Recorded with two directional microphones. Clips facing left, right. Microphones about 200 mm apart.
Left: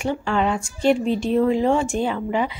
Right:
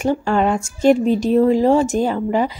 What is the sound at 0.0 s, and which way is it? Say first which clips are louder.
Speech: right 5 dB; 40° right (ahead or behind).